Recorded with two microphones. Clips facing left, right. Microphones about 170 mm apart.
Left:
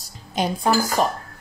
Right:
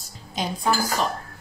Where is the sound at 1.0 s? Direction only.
50° left (ahead or behind).